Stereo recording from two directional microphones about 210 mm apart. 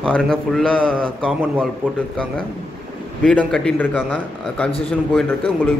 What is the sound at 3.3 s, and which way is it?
A man's voice, 5° left (ahead or behind).